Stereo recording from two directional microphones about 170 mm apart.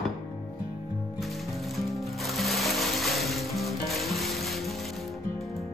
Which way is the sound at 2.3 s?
Centre (ahead or behind).